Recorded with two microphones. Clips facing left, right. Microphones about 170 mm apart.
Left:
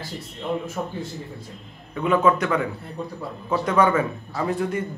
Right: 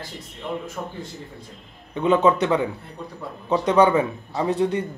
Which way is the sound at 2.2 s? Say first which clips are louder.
Right 2 dB; 20° right (ahead or behind).